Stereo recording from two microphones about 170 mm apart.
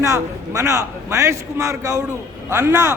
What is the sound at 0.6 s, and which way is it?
A man's voice, 15° right (ahead or behind).